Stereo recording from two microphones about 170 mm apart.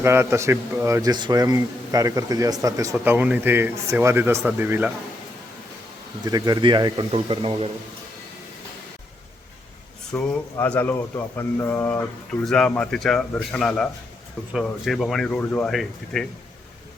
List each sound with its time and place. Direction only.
0.0 s a man's voice: 15° right (ahead or behind)
6.2 s a man's voice: 20° right (ahead or behind)
10.1 s speech: 10° left (ahead or behind)